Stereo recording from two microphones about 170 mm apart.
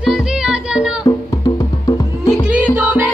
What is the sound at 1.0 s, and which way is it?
Music, 20° left (ahead or behind).